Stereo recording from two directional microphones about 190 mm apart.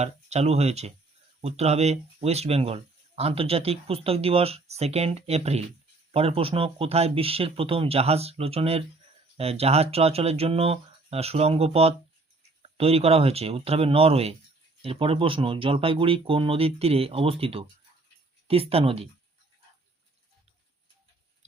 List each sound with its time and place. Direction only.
0.0 s speech: 35° right (ahead or behind)